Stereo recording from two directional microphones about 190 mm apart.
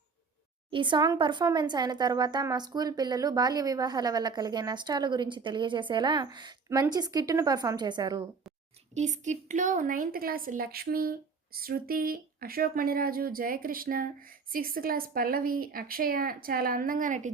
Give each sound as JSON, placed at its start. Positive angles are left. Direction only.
{"t": 0.7, "sound": "speech", "side_deg": -25}
{"t": 9.0, "sound": "a woman's voice", "side_deg": -40}